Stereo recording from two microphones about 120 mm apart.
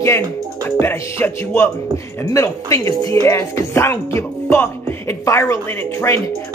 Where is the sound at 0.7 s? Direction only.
20° left (ahead or behind).